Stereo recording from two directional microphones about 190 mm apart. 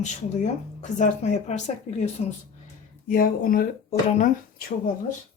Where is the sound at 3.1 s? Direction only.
50° left (ahead or behind).